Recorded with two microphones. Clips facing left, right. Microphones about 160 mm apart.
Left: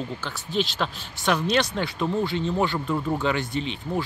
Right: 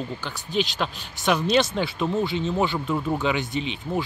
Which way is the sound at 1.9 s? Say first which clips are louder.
Even; 20° right (ahead or behind).